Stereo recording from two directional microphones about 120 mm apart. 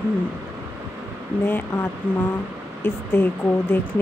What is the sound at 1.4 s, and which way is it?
Speech, 20° left (ahead or behind).